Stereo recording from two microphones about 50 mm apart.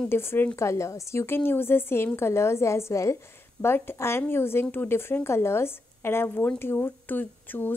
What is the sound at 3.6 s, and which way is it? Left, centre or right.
Speech, left.